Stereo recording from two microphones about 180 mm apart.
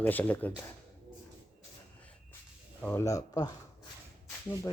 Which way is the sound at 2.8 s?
10° left (ahead or behind).